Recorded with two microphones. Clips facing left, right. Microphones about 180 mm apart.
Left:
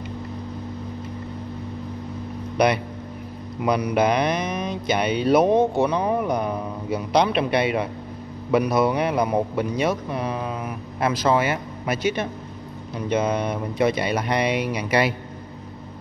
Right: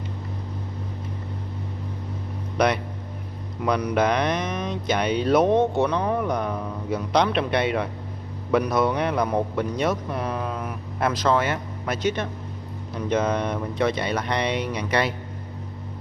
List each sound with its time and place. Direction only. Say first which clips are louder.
2.5 s a man's voice: left 2 dB; 5° left (ahead or behind)